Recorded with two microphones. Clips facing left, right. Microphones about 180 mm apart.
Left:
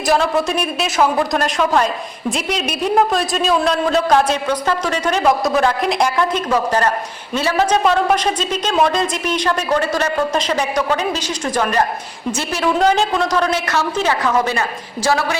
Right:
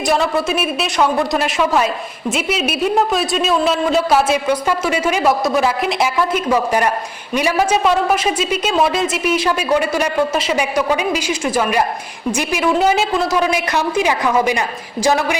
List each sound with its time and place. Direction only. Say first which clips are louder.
0.1 s a man's voice: left 1 dB; centre (ahead or behind)